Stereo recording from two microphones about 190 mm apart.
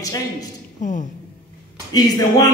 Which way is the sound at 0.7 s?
40° left (ahead or behind).